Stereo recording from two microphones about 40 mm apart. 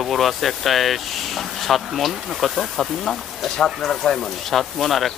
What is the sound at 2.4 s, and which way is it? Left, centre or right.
Speech, centre.